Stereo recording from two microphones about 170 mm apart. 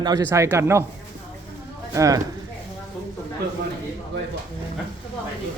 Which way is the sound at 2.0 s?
20° right (ahead or behind).